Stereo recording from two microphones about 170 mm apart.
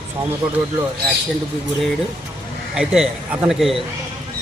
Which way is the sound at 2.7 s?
5° right (ahead or behind).